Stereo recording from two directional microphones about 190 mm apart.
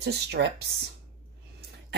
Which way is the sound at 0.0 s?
60° right (ahead or behind).